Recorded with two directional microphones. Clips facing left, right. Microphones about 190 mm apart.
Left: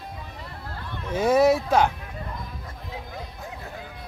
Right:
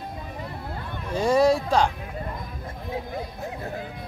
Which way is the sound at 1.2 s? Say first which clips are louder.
Left 1 dB; 5° left (ahead or behind).